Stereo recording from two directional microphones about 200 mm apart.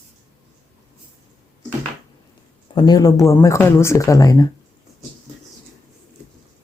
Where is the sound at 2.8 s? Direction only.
20° left (ahead or behind).